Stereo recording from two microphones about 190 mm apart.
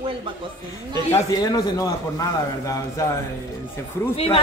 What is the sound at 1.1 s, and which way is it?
A man's voice, 20° left (ahead or behind).